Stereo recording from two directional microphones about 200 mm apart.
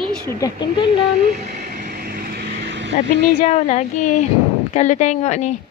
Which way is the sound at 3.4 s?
35° left (ahead or behind).